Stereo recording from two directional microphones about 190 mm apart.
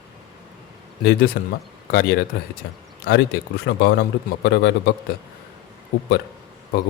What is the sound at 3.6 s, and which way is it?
Speech, 55° left (ahead or behind).